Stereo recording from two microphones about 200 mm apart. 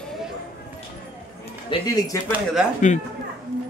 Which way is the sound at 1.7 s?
20° left (ahead or behind).